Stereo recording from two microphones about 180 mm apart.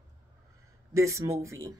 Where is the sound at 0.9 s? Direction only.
15° right (ahead or behind).